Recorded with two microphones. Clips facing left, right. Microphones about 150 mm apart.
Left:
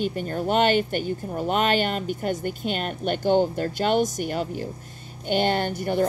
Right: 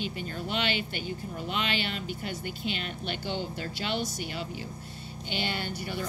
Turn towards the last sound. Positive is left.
turn(degrees=50)  # may be behind; listen again after turning